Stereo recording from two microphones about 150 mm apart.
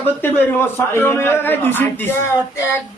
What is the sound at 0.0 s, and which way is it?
A man's voice, 15° left (ahead or behind).